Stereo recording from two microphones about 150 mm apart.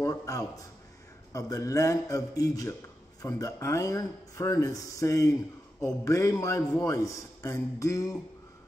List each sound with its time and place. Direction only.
0.0 s a man's voice: 20° left (ahead or behind)